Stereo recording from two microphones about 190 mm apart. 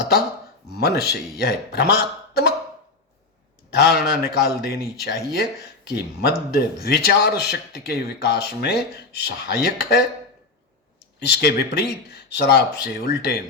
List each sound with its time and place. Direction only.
0.8 s speech: 60° left (ahead or behind)
3.8 s speech: 55° left (ahead or behind)
11.2 s speech: 60° left (ahead or behind)